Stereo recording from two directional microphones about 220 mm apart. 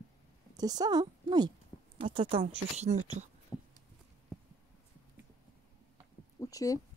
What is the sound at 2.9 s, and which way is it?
Speech, 80° right.